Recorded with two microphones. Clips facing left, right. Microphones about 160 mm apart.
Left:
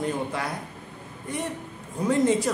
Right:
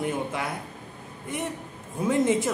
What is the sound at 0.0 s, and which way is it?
Speech, 20° right (ahead or behind).